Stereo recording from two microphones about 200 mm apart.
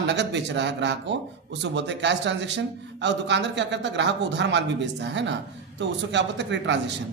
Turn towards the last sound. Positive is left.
turn(degrees=-65)  # may be behind; listen again after turning